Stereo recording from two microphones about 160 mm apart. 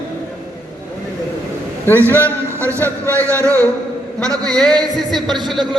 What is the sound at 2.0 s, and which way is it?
Speech, 10° left (ahead or behind).